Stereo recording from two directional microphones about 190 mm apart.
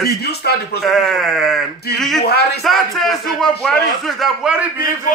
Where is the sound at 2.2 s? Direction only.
55° left (ahead or behind).